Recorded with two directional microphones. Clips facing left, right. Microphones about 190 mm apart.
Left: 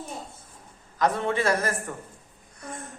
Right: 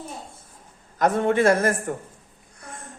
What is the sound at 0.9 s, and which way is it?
Speech, 50° right (ahead or behind).